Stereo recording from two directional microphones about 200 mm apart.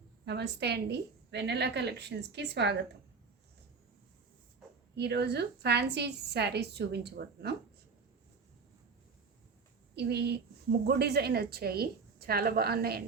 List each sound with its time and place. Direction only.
0.3 s a woman's voice: 55° right (ahead or behind)
4.9 s a woman's voice: 55° right (ahead or behind)
9.9 s a woman's voice: 55° right (ahead or behind)